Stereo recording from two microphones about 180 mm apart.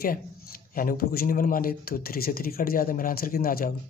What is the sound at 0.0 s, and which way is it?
Speech, 55° left (ahead or behind).